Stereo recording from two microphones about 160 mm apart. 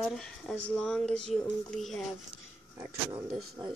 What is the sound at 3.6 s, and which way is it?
Speech, 15° right (ahead or behind).